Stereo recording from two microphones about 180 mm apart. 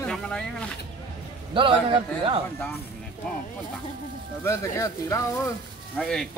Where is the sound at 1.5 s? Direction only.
30° right (ahead or behind).